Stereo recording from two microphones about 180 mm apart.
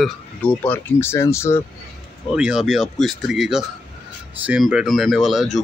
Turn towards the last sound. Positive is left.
turn(degrees=0)  # may be behind; listen again after turning